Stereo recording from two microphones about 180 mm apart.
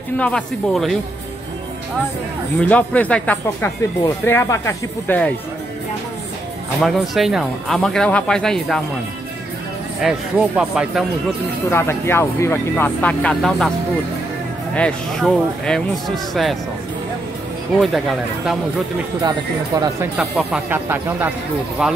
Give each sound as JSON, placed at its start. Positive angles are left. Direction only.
{"t": 0.2, "sound": "speech", "side_deg": 5}
{"t": 2.7, "sound": "speech", "side_deg": 10}
{"t": 6.8, "sound": "speech", "side_deg": 0}
{"t": 10.0, "sound": "speech", "side_deg": 0}
{"t": 11.7, "sound": "speech", "side_deg": 15}
{"t": 14.8, "sound": "speech", "side_deg": 5}
{"t": 17.7, "sound": "speech", "side_deg": 0}
{"t": 19.2, "sound": "speech", "side_deg": -20}
{"t": 20.2, "sound": "speech", "side_deg": -5}